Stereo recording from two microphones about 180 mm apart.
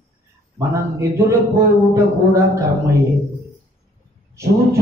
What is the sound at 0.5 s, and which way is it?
A man's voice, 15° right (ahead or behind).